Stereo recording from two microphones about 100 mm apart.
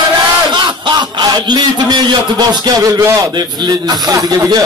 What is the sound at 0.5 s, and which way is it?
A man's voice, 45° right (ahead or behind).